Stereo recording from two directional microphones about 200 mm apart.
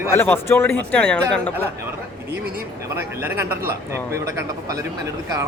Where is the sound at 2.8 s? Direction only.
15° right (ahead or behind).